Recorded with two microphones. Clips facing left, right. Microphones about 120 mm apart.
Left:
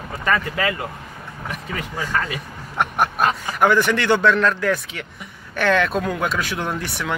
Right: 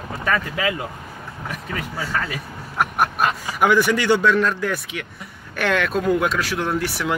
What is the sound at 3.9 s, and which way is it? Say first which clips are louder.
Speech: even; 55° left (ahead or behind).